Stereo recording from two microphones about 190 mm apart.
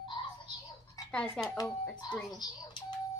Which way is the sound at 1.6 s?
20° left (ahead or behind).